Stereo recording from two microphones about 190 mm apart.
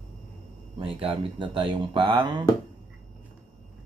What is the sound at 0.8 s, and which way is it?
Speech, 30° right (ahead or behind).